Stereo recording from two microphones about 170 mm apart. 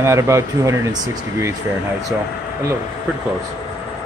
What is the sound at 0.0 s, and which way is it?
Speech, 15° right (ahead or behind).